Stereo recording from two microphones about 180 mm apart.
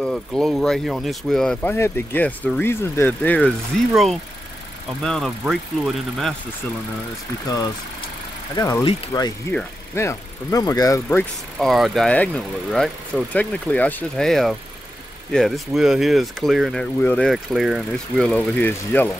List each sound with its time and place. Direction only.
0.0 s speech: centre (ahead or behind)
8.5 s speech: 20° left (ahead or behind)
11.5 s speech: centre (ahead or behind)